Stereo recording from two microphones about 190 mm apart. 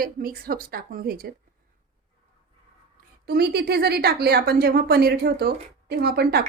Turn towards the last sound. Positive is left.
turn(degrees=-60)  # may be behind; listen again after turning